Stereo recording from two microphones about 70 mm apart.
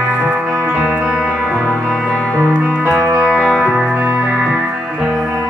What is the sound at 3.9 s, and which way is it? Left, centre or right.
Music, right.